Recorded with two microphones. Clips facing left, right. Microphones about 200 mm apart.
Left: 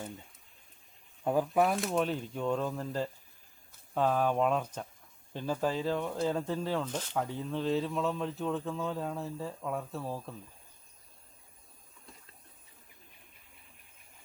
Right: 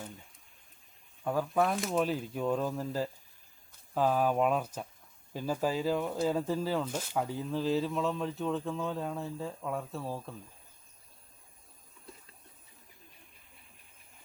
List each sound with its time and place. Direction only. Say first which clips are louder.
1.2 s speech: left 2 dB; 20° left (ahead or behind)
1.6 s speech: even; centre (ahead or behind)